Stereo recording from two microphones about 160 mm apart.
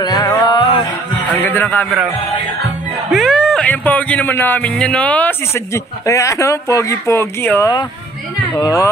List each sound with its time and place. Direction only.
0.0 s music: 25° left (ahead or behind)
1.4 s a man's voice: 10° left (ahead or behind)
3.1 s a man's voice: centre (ahead or behind); by 8.9 s 20° left (ahead or behind)